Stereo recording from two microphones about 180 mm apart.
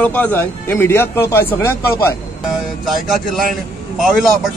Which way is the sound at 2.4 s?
Centre (ahead or behind).